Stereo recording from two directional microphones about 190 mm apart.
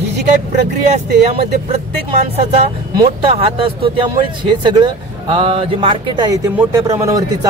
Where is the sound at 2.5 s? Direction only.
30° right (ahead or behind).